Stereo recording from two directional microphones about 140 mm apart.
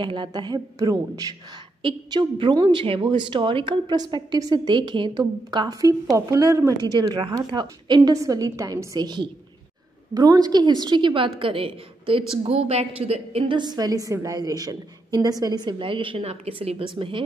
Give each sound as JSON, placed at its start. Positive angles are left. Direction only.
{"t": 0.0, "sound": "a woman's voice", "side_deg": -35}
{"t": 7.0, "sound": "a woman's voice", "side_deg": -30}